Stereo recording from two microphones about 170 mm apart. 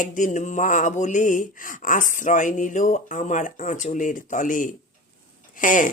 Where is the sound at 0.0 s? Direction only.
50° left (ahead or behind).